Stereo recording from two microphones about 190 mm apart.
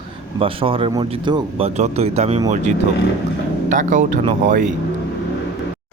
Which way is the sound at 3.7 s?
40° right (ahead or behind).